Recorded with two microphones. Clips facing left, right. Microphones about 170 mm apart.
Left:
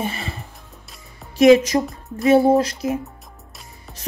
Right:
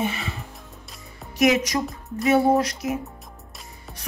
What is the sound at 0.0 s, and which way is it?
Music, 35° left (ahead or behind).